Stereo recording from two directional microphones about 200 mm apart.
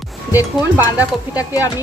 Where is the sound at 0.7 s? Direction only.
10° right (ahead or behind).